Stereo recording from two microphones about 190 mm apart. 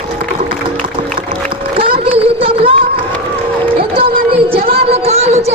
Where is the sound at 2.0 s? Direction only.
30° right (ahead or behind).